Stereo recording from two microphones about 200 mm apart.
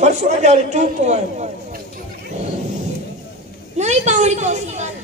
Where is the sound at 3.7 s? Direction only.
35° right (ahead or behind).